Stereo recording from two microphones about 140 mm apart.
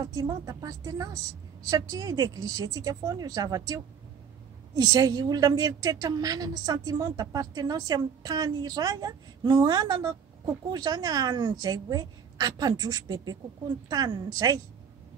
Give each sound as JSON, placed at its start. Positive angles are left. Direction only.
{"t": 0.0, "sound": "a woman's voice", "side_deg": -30}